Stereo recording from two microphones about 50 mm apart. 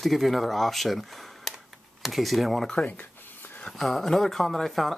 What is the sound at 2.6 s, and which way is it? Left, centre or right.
Speech, centre.